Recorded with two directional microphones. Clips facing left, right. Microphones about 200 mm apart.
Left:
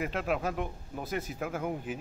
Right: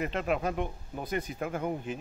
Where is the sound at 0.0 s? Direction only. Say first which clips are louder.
Right 1 dB; 5° left (ahead or behind).